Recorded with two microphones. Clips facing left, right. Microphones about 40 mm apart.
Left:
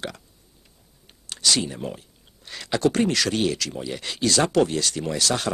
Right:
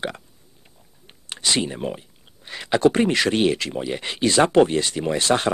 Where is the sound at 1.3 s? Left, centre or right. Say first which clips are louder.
Right 1 dB; right.